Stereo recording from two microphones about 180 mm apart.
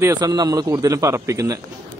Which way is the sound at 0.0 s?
20° right (ahead or behind).